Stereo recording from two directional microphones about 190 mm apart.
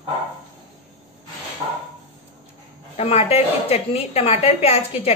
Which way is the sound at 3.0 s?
30° left (ahead or behind).